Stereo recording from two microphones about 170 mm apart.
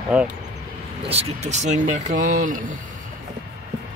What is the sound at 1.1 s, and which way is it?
Speech, 40° right (ahead or behind).